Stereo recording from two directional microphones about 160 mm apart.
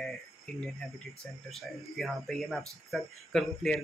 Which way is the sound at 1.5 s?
Centre (ahead or behind).